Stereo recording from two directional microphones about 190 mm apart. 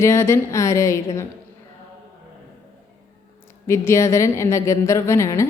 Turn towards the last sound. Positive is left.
turn(degrees=15)  # may be behind; listen again after turning